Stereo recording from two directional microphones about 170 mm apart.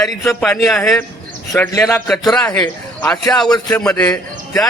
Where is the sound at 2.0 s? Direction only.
Centre (ahead or behind).